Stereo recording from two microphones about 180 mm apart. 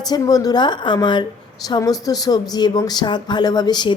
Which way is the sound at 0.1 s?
20° left (ahead or behind).